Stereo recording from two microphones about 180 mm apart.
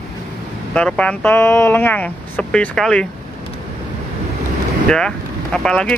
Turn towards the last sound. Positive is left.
turn(degrees=5)  # may be behind; listen again after turning